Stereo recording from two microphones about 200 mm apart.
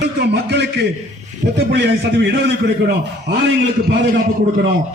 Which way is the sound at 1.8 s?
60° right (ahead or behind).